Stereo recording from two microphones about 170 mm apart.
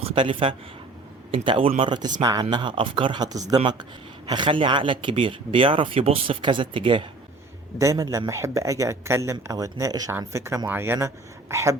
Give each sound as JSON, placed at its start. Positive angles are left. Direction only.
{"t": 0.0, "sound": "speech", "side_deg": -30}